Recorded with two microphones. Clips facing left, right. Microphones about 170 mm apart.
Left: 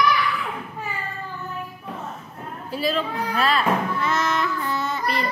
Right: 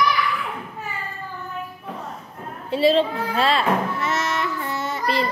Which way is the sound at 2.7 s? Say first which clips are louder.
Right 7 dB; 25° right (ahead or behind).